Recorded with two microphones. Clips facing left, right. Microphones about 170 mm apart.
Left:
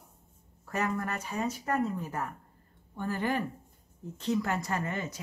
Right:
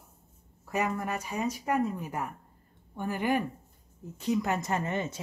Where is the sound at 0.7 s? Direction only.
10° right (ahead or behind).